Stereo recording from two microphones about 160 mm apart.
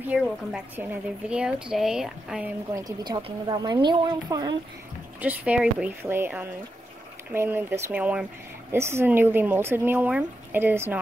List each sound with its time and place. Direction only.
0.0 s speech: 10° right (ahead or behind)
2.7 s speech: 25° right (ahead or behind)
5.2 s speech: 10° right (ahead or behind)